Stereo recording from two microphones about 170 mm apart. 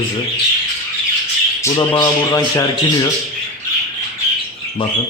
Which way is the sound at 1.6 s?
25° left (ahead or behind).